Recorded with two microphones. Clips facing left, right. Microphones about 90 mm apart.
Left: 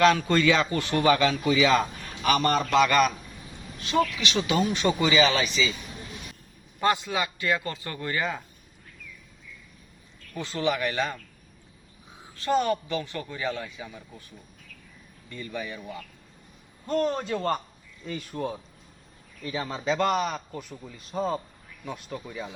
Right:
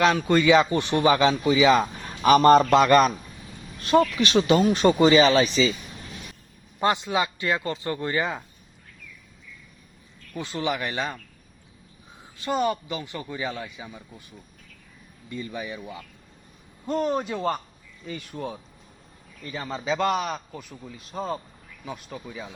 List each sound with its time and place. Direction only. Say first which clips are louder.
0.0 s a man's voice: right 1 dB; 15° right (ahead or behind)
2.2 s a man's voice: right 8 dB; 35° right (ahead or behind)
6.7 s a man's voice: right 2 dB; 20° right (ahead or behind)
10.3 s a man's voice: even; 20° right (ahead or behind)
12.4 s speech: left 1 dB; 15° right (ahead or behind)
15.3 s speech: right 2 dB; 15° right (ahead or behind)
16.8 s a man's voice: right 1 dB; 10° right (ahead or behind)